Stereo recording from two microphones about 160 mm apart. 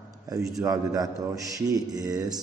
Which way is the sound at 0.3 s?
20° right (ahead or behind).